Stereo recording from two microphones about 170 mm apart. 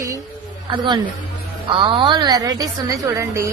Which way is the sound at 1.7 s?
30° right (ahead or behind).